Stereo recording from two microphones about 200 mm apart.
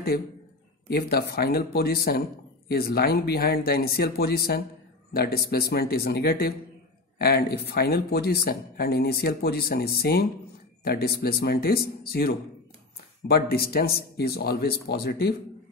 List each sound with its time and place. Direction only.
0.8 s speech: 50° left (ahead or behind)